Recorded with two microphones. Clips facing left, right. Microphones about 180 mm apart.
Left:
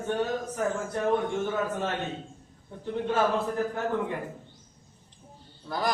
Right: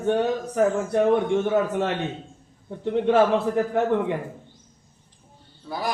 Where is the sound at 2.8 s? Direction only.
70° right (ahead or behind).